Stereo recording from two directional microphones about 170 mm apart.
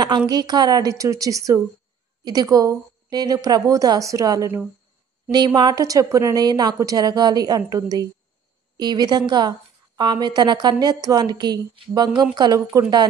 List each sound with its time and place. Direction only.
0.3 s a woman's voice: 25° right (ahead or behind)
5.6 s a woman's voice: 20° right (ahead or behind)